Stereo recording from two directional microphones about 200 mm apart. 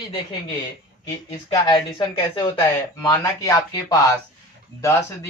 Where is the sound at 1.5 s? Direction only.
20° left (ahead or behind).